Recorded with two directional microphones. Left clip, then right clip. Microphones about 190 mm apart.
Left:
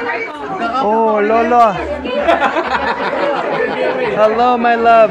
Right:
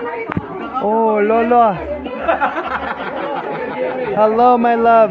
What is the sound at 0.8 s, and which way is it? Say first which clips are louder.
Speech: left 1 dB; 20° right (ahead or behind).